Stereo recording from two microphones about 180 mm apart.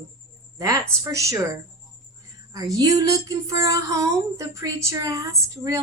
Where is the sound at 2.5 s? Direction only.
20° right (ahead or behind).